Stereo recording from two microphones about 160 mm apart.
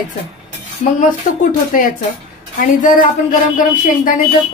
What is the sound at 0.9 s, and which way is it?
Speech, 50° left (ahead or behind).